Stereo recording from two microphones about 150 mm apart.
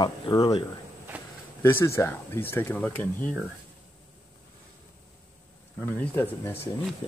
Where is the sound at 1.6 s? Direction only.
15° left (ahead or behind).